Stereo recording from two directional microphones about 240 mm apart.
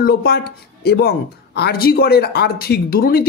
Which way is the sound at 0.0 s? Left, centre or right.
Left.